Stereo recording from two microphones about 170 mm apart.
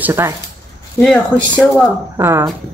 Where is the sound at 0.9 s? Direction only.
5° left (ahead or behind).